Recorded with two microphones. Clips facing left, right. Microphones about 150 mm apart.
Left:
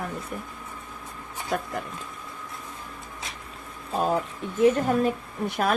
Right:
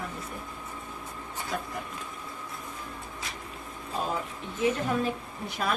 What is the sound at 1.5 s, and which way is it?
Speech, 60° left (ahead or behind).